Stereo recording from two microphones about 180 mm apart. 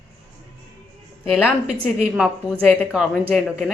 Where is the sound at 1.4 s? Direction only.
10° left (ahead or behind).